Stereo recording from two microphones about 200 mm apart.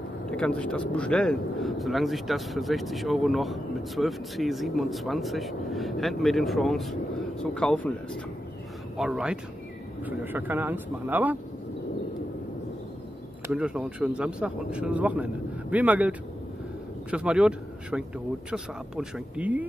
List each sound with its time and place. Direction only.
0.3 s speech: 5° left (ahead or behind)
8.9 s speech: 5° right (ahead or behind)
13.5 s speech: 5° right (ahead or behind)